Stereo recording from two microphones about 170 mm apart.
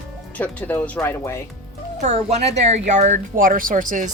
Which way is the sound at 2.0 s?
40° right (ahead or behind).